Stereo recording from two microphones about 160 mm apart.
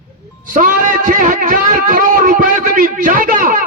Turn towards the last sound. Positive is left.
turn(degrees=-60)  # may be behind; listen again after turning